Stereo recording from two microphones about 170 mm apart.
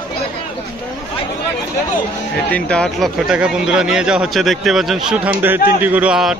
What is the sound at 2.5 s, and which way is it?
Speech, 5° left (ahead or behind).